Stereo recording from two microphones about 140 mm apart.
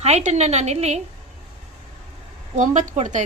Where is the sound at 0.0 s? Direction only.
50° right (ahead or behind).